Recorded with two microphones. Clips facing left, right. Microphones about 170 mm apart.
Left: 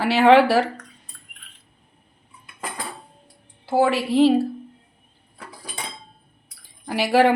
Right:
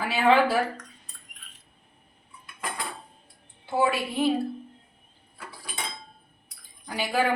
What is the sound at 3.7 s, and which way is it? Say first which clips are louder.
Speech: left 6 dB; 90° left.